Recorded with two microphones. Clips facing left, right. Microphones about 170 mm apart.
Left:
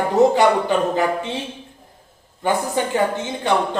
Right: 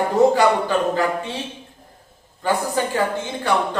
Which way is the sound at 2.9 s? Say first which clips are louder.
Left 2 dB; 20° left (ahead or behind).